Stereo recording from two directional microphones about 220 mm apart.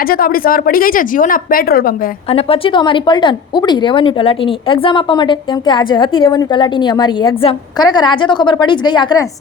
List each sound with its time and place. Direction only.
0.1 s a woman's voice: 40° left (ahead or behind)
2.3 s speech: 25° left (ahead or behind)